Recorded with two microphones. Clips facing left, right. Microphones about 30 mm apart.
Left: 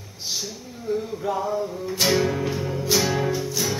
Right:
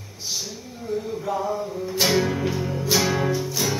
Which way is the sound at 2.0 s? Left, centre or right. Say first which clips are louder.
Even; centre.